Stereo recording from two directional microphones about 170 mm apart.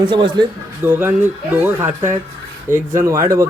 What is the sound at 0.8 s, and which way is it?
Speech, 15° right (ahead or behind).